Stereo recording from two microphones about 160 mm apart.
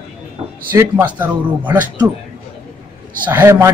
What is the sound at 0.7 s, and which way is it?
A man's voice, 15° right (ahead or behind).